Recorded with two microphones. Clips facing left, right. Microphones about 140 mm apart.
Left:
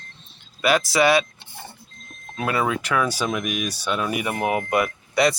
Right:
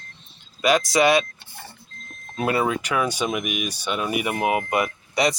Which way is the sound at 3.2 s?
10° right (ahead or behind).